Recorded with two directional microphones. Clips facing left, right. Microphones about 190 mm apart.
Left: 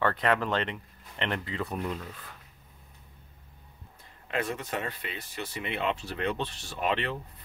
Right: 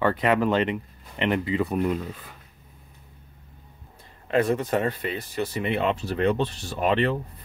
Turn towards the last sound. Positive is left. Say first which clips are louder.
# right 7 dB
turn(degrees=-40)  # may be behind; listen again after turning